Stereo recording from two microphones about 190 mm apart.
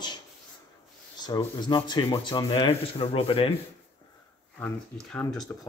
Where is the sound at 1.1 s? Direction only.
20° left (ahead or behind).